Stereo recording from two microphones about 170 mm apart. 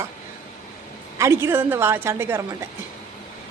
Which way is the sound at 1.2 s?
15° right (ahead or behind).